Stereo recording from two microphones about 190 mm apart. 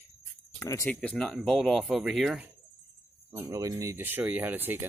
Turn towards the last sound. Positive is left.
turn(degrees=-10)  # may be behind; listen again after turning